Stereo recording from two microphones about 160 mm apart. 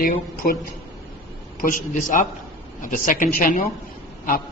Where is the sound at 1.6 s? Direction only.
55° left (ahead or behind).